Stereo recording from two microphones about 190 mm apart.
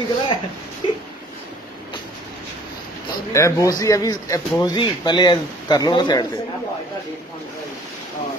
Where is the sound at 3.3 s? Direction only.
15° left (ahead or behind).